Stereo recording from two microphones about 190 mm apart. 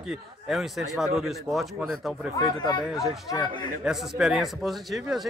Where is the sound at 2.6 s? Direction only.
20° left (ahead or behind).